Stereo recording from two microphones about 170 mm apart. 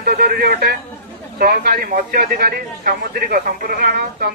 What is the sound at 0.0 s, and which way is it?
A man's voice, 65° right (ahead or behind).